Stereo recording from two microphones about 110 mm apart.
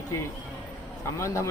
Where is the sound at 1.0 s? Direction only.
25° left (ahead or behind).